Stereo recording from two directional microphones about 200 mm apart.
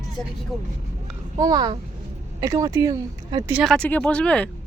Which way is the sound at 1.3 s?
20° right (ahead or behind).